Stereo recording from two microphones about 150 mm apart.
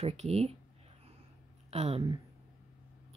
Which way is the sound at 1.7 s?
40° right (ahead or behind).